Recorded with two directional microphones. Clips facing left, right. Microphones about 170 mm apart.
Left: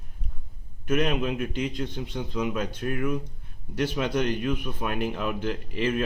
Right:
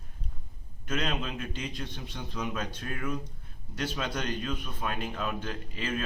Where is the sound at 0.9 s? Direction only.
15° left (ahead or behind).